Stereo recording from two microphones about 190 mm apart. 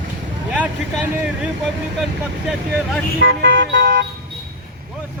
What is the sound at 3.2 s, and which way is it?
Speech, 60° right (ahead or behind).